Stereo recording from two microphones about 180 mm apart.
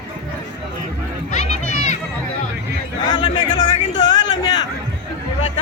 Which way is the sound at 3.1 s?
25° left (ahead or behind).